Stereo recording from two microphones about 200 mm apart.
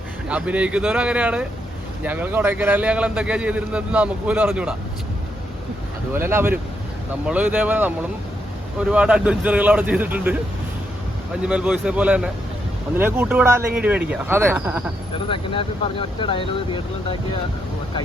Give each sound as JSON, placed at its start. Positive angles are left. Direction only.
{"t": 0.3, "sound": "a man's voice", "side_deg": -5}
{"t": 6.1, "sound": "a man's voice", "side_deg": -10}
{"t": 11.4, "sound": "a man's voice", "side_deg": -5}
{"t": 15.3, "sound": "speech", "side_deg": 25}